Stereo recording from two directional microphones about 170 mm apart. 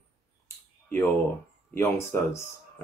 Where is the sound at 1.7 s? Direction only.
15° left (ahead or behind).